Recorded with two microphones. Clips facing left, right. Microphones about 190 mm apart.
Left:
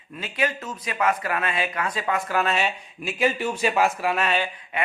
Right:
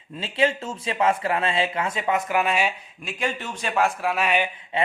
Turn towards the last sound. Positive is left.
turn(degrees=-20)  # may be behind; listen again after turning